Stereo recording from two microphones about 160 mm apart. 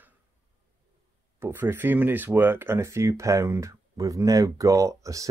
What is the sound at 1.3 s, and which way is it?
Speech, 15° right (ahead or behind).